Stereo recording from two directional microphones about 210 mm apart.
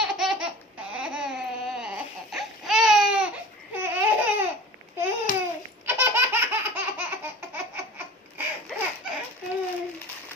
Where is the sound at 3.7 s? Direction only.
10° right (ahead or behind).